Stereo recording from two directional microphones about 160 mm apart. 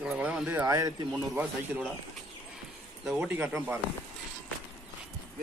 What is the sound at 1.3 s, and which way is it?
Speech, 10° right (ahead or behind).